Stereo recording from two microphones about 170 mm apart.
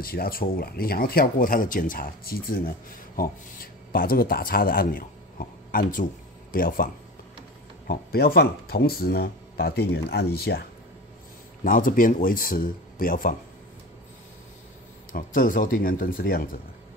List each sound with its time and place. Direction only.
0.0 s speech: 60° left (ahead or behind)
7.9 s speech: 65° left (ahead or behind)
11.6 s speech: 55° left (ahead or behind)
15.1 s speech: 55° left (ahead or behind)